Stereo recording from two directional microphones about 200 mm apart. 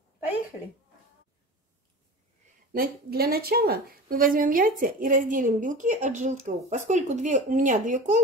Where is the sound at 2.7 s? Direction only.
50° right (ahead or behind).